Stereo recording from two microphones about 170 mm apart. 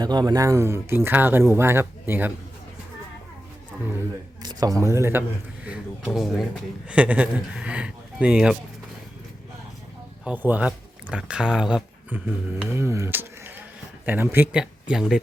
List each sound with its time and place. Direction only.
0.0 s speech: 25° right (ahead or behind)
4.4 s a man's voice: 20° right (ahead or behind)
5.6 s a man's voice: 5° right (ahead or behind)
10.2 s speech: 10° right (ahead or behind)